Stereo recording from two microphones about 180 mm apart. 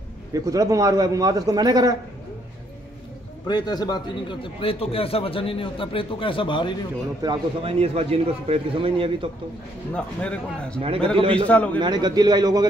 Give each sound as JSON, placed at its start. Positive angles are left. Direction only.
{"t": 0.3, "sound": "a man's voice", "side_deg": -20}
{"t": 3.4, "sound": "a man's voice", "side_deg": 25}
{"t": 7.2, "sound": "a man's voice", "side_deg": -35}
{"t": 9.9, "sound": "speech", "side_deg": 5}
{"t": 11.8, "sound": "a man's voice", "side_deg": -25}